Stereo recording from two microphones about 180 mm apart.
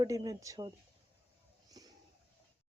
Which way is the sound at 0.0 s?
20° right (ahead or behind).